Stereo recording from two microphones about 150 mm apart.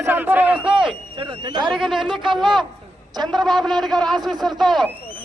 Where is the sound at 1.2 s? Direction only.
30° right (ahead or behind).